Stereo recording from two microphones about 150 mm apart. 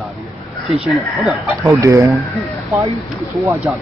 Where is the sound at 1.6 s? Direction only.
20° right (ahead or behind).